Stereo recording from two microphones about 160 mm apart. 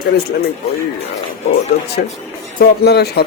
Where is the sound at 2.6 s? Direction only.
85° left.